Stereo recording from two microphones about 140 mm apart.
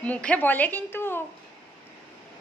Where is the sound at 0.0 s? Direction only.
10° left (ahead or behind).